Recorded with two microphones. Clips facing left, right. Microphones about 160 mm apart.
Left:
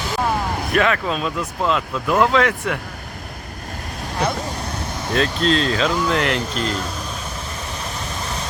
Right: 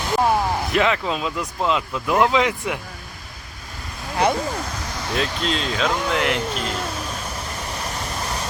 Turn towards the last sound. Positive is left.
turn(degrees=-5)  # may be behind; listen again after turning